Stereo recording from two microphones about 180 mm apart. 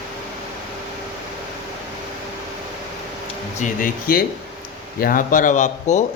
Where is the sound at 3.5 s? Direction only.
45° left (ahead or behind).